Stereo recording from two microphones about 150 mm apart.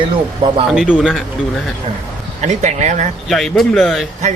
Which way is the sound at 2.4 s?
50° right (ahead or behind).